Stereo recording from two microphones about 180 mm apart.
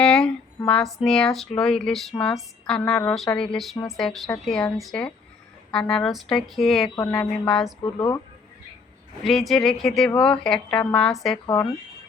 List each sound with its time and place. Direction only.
0.0 s a sound: 5° left (ahead or behind)
0.9 s speech: 5° left (ahead or behind)
7.9 s speech: 20° left (ahead or behind)
9.2 s speech: centre (ahead or behind)
11.4 s speech: 20° left (ahead or behind)